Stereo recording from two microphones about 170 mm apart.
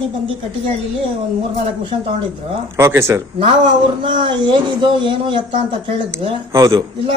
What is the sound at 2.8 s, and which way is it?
Speech, 15° right (ahead or behind).